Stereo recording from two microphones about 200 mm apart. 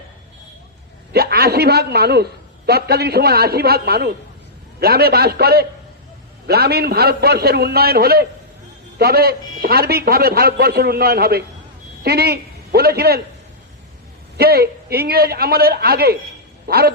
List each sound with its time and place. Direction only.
1.1 s a man's voice: 50° right (ahead or behind)
14.3 s a man's voice: 50° right (ahead or behind)